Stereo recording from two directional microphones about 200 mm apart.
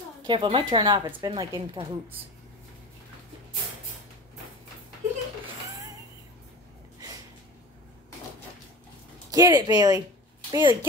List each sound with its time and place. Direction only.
0.3 s speech: 25° right (ahead or behind)
9.3 s speech: 15° right (ahead or behind)